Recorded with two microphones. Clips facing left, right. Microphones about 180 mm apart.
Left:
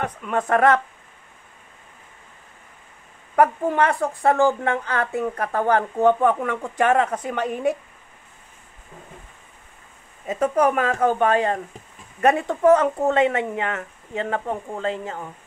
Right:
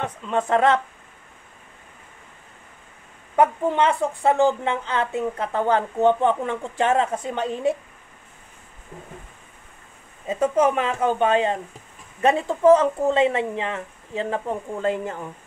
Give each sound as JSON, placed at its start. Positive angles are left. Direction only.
{"t": 0.0, "sound": "speech", "side_deg": -25}
{"t": 3.3, "sound": "speech", "side_deg": -20}
{"t": 10.2, "sound": "speech", "side_deg": -25}
{"t": 14.3, "sound": "speech", "side_deg": -45}